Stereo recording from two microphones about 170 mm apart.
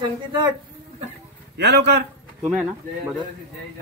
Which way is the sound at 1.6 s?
80° right.